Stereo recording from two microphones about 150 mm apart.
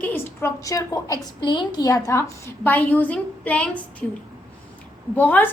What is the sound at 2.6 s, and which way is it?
A woman's voice, 10° left (ahead or behind).